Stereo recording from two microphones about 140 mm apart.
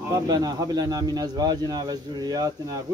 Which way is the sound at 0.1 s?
25° right (ahead or behind).